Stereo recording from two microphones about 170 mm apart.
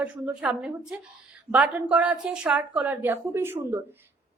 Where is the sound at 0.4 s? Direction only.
5° right (ahead or behind).